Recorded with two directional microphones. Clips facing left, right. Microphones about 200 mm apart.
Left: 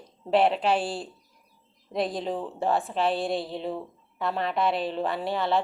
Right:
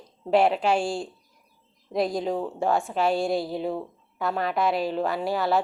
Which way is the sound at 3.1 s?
Centre (ahead or behind).